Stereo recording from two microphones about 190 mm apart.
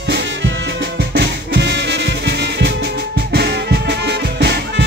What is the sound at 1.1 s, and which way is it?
Music, 65° right (ahead or behind).